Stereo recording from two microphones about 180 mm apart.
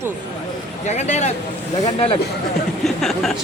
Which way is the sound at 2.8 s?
Centre (ahead or behind).